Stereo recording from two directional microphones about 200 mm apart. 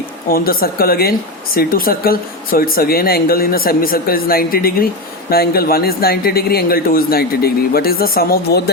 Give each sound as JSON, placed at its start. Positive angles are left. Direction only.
{"t": 0.3, "sound": "a man's voice", "side_deg": 50}